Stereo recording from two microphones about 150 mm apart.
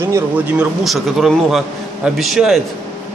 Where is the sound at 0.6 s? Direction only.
Centre (ahead or behind).